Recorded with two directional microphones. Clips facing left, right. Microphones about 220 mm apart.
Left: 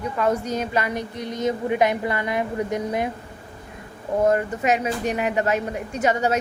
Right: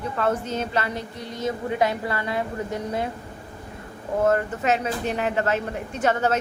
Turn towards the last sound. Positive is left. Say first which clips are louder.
# left 1 dB
turn(degrees=10)  # may be behind; listen again after turning